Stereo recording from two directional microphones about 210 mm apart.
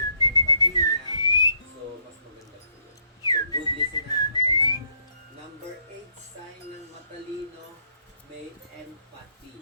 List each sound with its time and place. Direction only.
0.2 s whistling: 20° left (ahead or behind)
3.2 s whistling: 20° left (ahead or behind)